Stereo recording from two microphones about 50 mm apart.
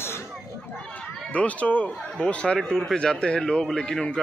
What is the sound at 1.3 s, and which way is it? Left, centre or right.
Speech, left.